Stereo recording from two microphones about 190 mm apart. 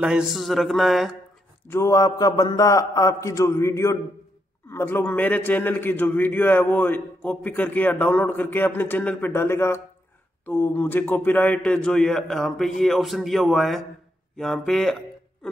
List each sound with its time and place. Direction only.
0.0 s a man's voice: 5° right (ahead or behind)
1.7 s a man's voice: 15° left (ahead or behind)